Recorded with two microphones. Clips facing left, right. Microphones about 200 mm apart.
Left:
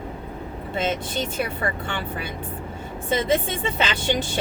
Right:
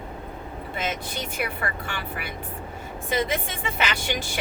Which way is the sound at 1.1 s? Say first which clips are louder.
Left 4 dB; 25° left (ahead or behind).